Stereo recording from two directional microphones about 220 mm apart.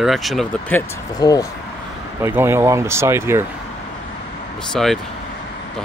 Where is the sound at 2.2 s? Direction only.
10° right (ahead or behind).